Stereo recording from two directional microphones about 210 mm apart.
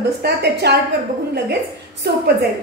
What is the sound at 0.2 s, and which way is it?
Speech, 50° right (ahead or behind).